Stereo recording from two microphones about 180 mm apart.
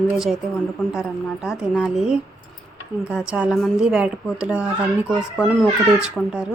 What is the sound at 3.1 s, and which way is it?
A woman's voice, 5° right (ahead or behind).